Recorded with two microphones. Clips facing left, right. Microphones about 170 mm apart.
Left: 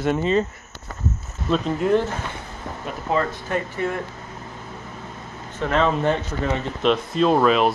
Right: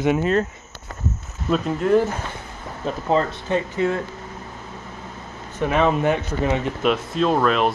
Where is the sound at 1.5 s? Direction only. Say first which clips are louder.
Right 1 dB; centre (ahead or behind).